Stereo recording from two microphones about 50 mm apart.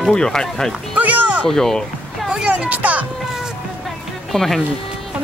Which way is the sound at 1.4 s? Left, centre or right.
Centre.